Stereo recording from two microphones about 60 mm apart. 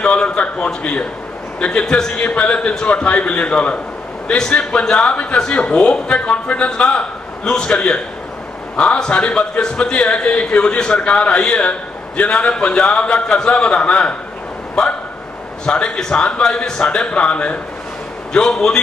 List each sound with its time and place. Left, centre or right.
0.0 s a man's voice: centre